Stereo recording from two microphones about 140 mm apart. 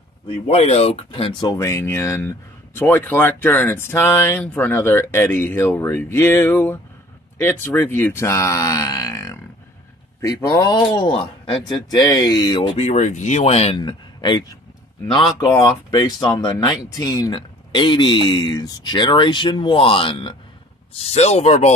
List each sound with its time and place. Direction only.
0.3 s speech: 50° left (ahead or behind)
1.6 s speech: 20° left (ahead or behind)
12.7 s speech: 50° left (ahead or behind)
13.7 s speech: 35° left (ahead or behind); by 21.7 s 50° left (ahead or behind)